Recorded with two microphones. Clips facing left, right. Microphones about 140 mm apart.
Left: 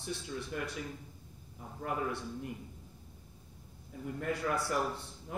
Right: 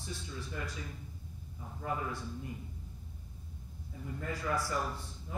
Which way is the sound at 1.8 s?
65° left (ahead or behind).